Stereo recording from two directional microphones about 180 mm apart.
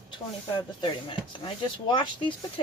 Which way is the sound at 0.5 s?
25° left (ahead or behind).